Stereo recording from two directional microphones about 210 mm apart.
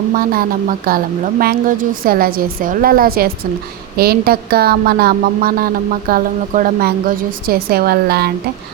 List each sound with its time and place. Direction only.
0.1 s speech: 45° right (ahead or behind)